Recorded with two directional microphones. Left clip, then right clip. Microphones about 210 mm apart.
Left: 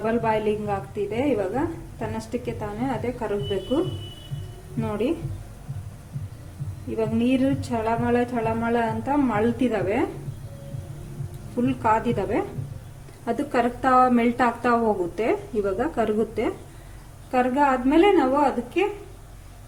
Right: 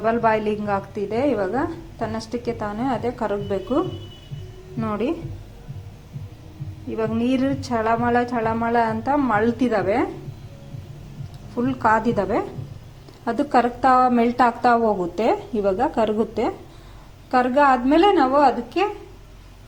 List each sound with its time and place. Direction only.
0.0 s a woman's voice: 5° right (ahead or behind)
4.8 s a woman's voice: 5° right (ahead or behind)
6.9 s a woman's voice: 10° right (ahead or behind)
11.6 s a woman's voice: 10° right (ahead or behind)